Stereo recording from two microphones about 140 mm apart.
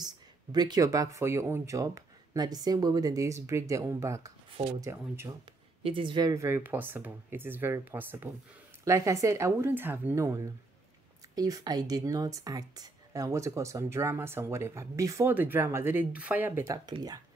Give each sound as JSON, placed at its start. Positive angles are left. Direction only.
{"t": 0.0, "sound": "speech", "side_deg": -30}
{"t": 5.8, "sound": "speech", "side_deg": -40}